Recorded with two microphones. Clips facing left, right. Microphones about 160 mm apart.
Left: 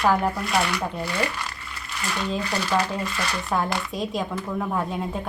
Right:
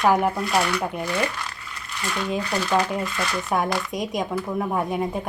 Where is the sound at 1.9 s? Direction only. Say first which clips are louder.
Right 1 dB; centre (ahead or behind).